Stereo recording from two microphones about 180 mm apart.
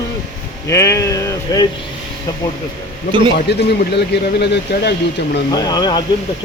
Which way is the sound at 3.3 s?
65° left (ahead or behind).